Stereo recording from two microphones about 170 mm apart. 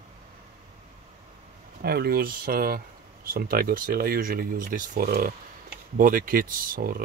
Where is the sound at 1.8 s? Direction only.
65° right (ahead or behind).